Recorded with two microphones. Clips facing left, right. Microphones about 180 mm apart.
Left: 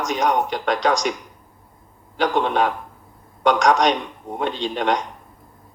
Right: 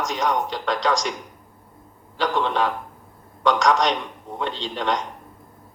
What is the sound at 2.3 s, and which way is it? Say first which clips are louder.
Speech: left 2 dB; 15° left (ahead or behind).